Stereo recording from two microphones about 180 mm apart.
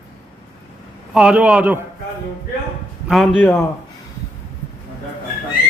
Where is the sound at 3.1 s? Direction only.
Centre (ahead or behind).